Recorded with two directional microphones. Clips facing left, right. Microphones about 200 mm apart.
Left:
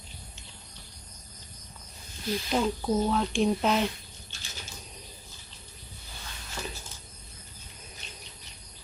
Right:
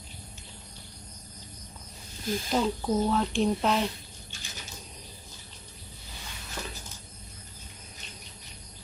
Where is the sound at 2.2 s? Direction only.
45° right (ahead or behind).